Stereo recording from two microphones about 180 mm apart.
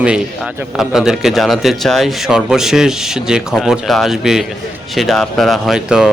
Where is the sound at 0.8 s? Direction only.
Centre (ahead or behind).